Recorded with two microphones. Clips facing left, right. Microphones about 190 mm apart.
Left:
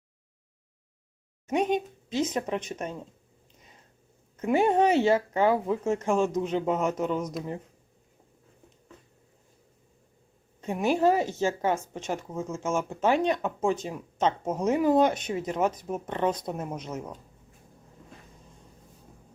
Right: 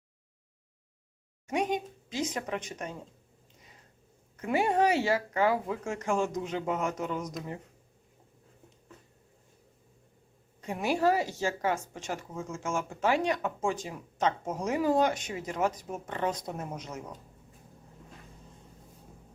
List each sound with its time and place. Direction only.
1.5 s speech: 25° left (ahead or behind)
4.4 s speech: 25° left (ahead or behind)
10.6 s speech: 25° left (ahead or behind)